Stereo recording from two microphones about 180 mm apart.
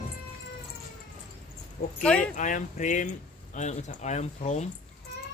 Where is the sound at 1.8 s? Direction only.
55° left (ahead or behind).